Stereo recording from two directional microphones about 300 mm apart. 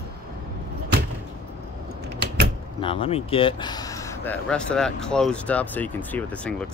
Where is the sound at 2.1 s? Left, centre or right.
Right.